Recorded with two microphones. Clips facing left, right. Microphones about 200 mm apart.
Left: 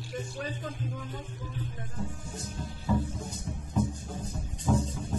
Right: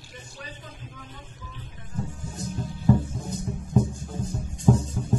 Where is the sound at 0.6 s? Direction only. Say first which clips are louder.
Left 7 dB; 45° left (ahead or behind).